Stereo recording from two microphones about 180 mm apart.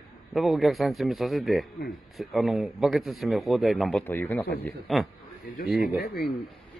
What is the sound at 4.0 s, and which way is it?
Speech, 10° left (ahead or behind).